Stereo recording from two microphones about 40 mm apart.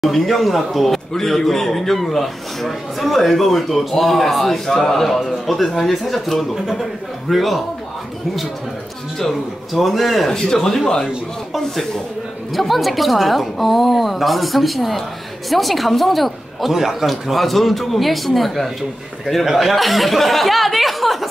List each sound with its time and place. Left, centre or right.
0.0 s speech: centre
9.8 s speech: centre
10.3 s speech: centre
12.5 s a man's voice: centre
17.1 s speech: centre